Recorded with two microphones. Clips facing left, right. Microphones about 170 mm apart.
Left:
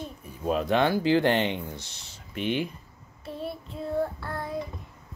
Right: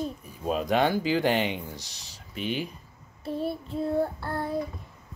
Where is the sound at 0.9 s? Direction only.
15° right (ahead or behind).